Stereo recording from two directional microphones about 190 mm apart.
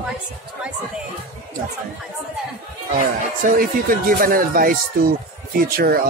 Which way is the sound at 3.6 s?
50° right (ahead or behind).